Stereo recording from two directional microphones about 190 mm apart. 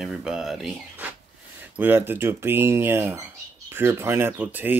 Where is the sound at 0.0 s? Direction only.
5° right (ahead or behind).